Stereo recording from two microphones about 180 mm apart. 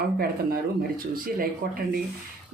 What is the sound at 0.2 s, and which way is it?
Speech, 55° right (ahead or behind).